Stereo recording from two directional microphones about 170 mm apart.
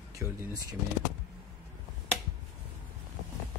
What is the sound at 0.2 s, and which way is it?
Speech, 20° right (ahead or behind).